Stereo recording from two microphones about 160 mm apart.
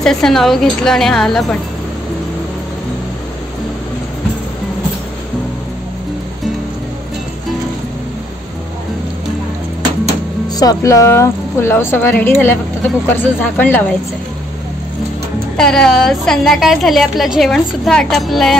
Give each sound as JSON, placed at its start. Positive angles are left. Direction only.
{"t": 0.0, "sound": "a woman's voice", "side_deg": 5}
{"t": 10.5, "sound": "a woman's voice", "side_deg": 25}
{"t": 15.5, "sound": "a woman's voice", "side_deg": 5}